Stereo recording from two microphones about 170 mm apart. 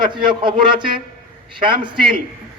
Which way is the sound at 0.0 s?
30° right (ahead or behind).